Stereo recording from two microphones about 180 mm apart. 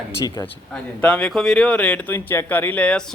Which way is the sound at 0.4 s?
5° left (ahead or behind).